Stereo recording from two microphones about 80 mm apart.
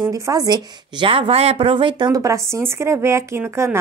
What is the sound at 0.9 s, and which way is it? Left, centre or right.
Speech, right.